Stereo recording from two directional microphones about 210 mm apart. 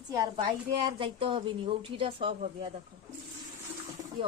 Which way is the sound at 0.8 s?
25° right (ahead or behind).